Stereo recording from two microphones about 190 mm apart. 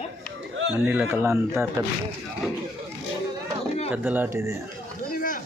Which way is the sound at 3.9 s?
10° right (ahead or behind).